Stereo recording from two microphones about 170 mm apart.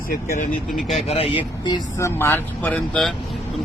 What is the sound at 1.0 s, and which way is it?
Speech, 35° left (ahead or behind).